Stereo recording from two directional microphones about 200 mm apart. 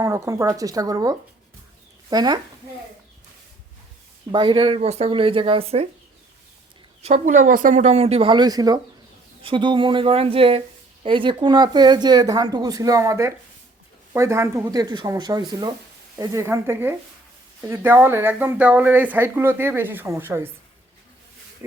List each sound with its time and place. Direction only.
0.0 s speech: 15° right (ahead or behind)
4.3 s speech: 25° right (ahead or behind)
7.0 s speech: 35° right (ahead or behind); by 20.5 s 10° right (ahead or behind)